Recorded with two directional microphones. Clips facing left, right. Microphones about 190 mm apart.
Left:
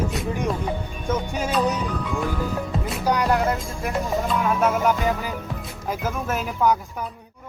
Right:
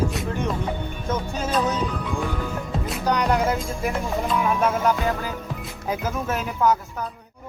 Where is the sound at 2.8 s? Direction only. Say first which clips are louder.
Even; 5° left (ahead or behind).